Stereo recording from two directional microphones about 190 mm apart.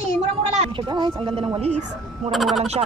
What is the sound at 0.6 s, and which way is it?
Speech, 25° right (ahead or behind).